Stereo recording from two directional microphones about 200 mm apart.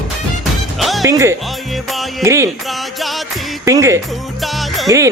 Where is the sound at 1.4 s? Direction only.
Centre (ahead or behind).